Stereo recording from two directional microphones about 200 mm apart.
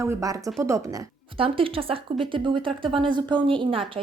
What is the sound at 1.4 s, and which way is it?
A woman's voice, 25° right (ahead or behind).